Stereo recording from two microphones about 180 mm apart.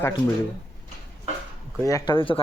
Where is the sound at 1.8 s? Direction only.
20° left (ahead or behind).